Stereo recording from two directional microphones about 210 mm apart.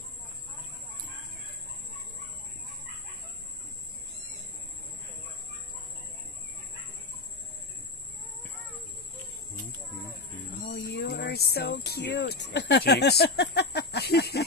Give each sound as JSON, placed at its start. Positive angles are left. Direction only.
{"t": 10.6, "sound": "speech", "side_deg": 50}